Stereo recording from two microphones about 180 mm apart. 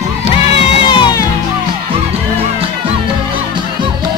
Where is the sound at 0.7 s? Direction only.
25° left (ahead or behind).